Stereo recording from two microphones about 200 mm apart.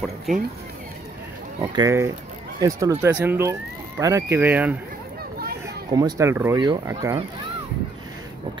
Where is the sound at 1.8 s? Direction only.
15° right (ahead or behind).